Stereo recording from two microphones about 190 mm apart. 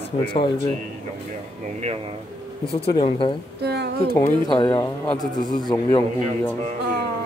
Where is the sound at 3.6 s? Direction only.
60° right (ahead or behind).